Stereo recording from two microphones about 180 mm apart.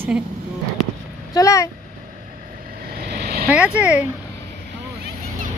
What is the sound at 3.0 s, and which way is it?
Vehicle, 60° right (ahead or behind).